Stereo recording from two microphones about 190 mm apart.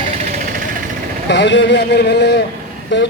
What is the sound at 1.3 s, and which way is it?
Speech, 65° left (ahead or behind).